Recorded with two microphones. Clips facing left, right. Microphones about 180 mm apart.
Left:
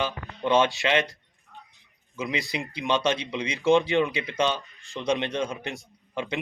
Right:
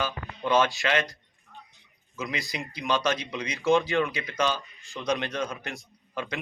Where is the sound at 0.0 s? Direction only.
25° left (ahead or behind).